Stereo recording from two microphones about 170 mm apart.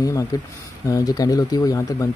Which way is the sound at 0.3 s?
20° left (ahead or behind).